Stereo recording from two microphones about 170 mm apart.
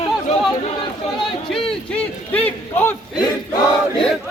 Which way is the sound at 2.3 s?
10° left (ahead or behind).